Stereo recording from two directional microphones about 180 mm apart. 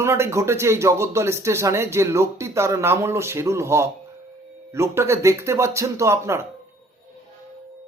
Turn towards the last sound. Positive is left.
turn(degrees=-15)  # may be behind; listen again after turning